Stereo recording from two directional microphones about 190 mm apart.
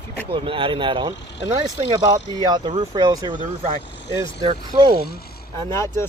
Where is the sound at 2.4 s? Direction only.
25° right (ahead or behind).